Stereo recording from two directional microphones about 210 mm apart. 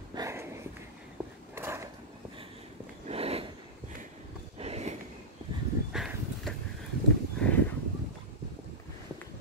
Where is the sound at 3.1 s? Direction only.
30° right (ahead or behind).